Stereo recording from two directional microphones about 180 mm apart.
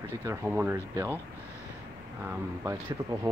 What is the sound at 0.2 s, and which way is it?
Speech, 15° right (ahead or behind).